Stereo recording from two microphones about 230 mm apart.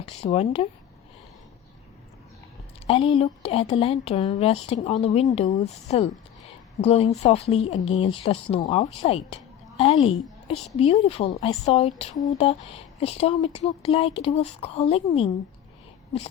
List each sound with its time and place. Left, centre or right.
0.2 s speech: left
2.8 s speech: left
12.1 s speech: centre